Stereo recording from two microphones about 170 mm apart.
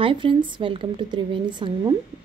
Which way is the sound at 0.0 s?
30° right (ahead or behind).